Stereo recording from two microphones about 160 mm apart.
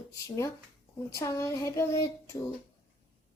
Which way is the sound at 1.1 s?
20° left (ahead or behind).